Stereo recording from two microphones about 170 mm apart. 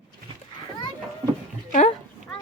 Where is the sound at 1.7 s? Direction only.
45° left (ahead or behind).